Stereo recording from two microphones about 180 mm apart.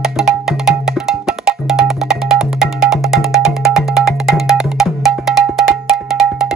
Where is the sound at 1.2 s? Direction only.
Centre (ahead or behind).